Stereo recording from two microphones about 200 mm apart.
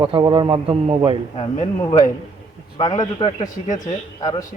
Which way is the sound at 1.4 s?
30° left (ahead or behind).